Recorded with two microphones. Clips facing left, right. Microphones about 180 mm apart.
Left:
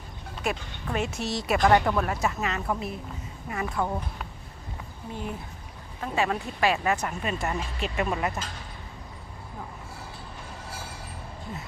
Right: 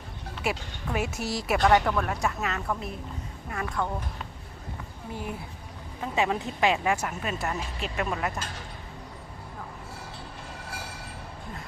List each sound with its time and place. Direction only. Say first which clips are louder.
0.4 s speech: even; 5° right (ahead or behind)
1.1 s speech: left 1 dB; 25° left (ahead or behind)
1.4 s speech: left 1 dB; centre (ahead or behind)
6.0 s speech: even; 15° right (ahead or behind); by 8.3 s centre (ahead or behind)